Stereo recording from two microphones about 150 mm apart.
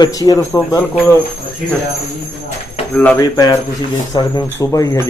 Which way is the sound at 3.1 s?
25° left (ahead or behind).